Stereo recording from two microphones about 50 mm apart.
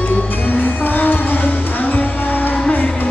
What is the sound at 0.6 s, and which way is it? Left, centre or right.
Music, left.